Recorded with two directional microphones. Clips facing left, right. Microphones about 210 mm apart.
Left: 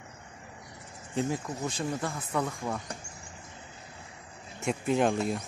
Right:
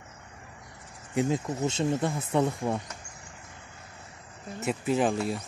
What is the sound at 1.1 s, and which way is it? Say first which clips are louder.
Speech: right 4 dB; 20° right (ahead or behind).